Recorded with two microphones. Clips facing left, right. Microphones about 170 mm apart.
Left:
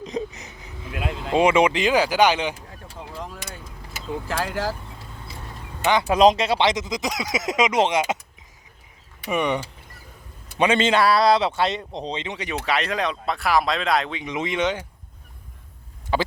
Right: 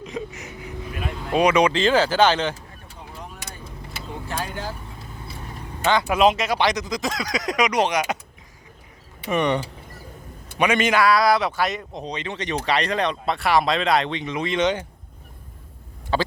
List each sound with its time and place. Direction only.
0.0 s a sound: 35° left (ahead or behind)
1.3 s speech: 25° left (ahead or behind)
2.9 s a sound: 90° left
4.3 s speech: 90° left
5.8 s speech: 20° left (ahead or behind)
6.1 s speech: 35° left (ahead or behind)
9.2 s speech: 10° left (ahead or behind)
10.6 s speech: 30° left (ahead or behind)
12.4 s speech: 5° left (ahead or behind)
14.3 s speech: 15° left (ahead or behind)
16.1 s a sound: 15° left (ahead or behind)